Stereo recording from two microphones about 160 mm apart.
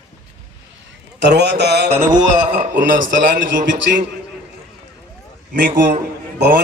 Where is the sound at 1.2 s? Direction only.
90° right.